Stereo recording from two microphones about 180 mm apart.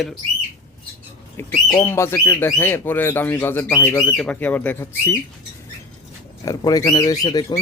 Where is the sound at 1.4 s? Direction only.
15° left (ahead or behind).